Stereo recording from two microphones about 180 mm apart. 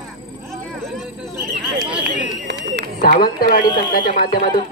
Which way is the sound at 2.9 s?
50° left (ahead or behind).